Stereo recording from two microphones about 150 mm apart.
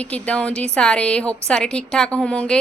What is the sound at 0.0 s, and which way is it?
A woman's voice, 10° left (ahead or behind).